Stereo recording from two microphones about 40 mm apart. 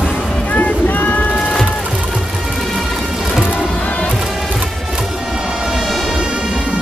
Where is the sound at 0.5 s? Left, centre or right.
Left.